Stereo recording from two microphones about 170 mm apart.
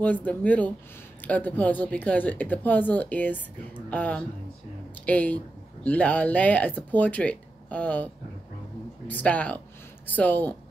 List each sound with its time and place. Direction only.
0.0 s speech: 10° left (ahead or behind)